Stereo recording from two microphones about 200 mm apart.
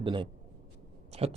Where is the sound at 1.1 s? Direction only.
30° right (ahead or behind).